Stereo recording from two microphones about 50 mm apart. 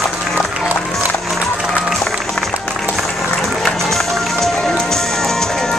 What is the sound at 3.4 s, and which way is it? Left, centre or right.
Music, centre.